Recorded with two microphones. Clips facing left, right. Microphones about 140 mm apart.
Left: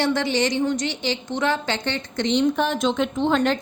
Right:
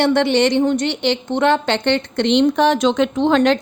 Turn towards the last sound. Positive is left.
turn(degrees=-80)